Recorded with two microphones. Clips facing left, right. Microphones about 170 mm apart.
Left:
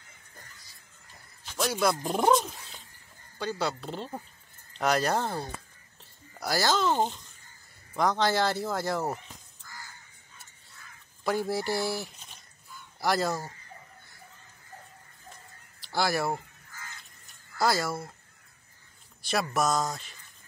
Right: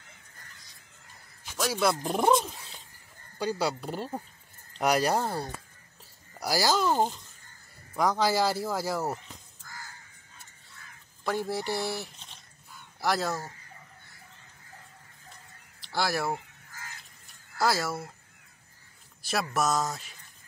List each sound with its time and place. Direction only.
1.4 s speech: centre (ahead or behind)
9.6 s crow: 50° right (ahead or behind)
11.2 s speech: centre (ahead or behind)
15.8 s speech: centre (ahead or behind)
17.6 s speech: centre (ahead or behind)
19.2 s speech: centre (ahead or behind)